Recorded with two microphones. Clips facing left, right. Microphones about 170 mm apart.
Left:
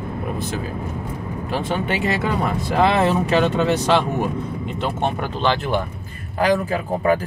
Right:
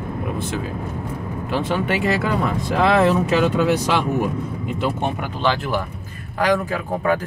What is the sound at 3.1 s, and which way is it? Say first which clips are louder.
Speech: right 1 dB; centre (ahead or behind).